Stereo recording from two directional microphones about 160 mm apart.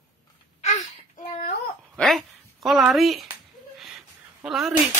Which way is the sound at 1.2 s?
50° left (ahead or behind).